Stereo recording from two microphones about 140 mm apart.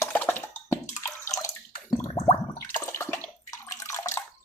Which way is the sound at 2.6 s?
20° left (ahead or behind).